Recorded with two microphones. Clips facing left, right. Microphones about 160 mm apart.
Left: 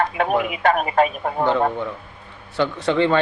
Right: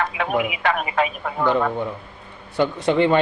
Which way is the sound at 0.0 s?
40° left (ahead or behind).